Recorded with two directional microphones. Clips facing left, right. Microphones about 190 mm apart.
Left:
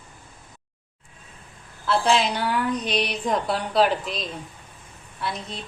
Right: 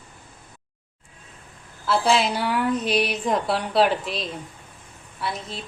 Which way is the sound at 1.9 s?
5° right (ahead or behind).